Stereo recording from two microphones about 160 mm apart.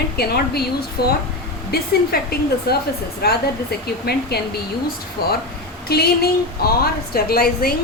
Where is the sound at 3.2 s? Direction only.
90° left.